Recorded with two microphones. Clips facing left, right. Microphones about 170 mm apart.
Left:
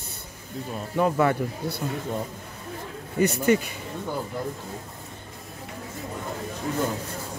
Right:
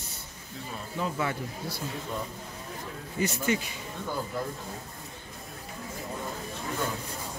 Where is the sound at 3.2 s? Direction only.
60° left (ahead or behind).